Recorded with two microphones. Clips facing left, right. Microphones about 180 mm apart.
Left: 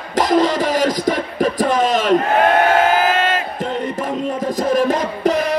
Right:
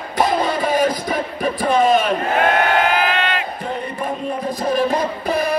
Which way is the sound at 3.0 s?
40° left (ahead or behind).